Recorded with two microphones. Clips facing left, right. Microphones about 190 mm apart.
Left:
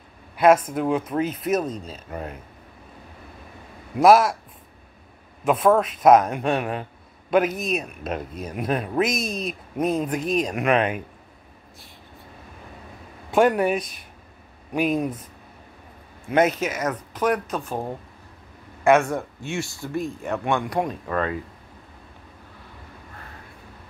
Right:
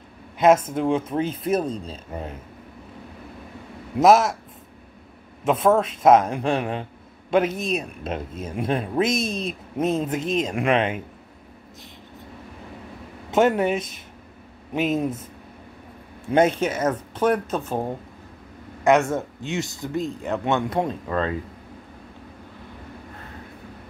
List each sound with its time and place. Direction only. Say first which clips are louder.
0.4 s speech: even; 25° right (ahead or behind)
4.0 s speech: left 1 dB; 25° right (ahead or behind)
5.4 s speech: even; 25° right (ahead or behind)
13.3 s speech: even; 25° right (ahead or behind)
16.3 s speech: right 1 dB; 30° right (ahead or behind)
18.9 s speech: even; 20° right (ahead or behind)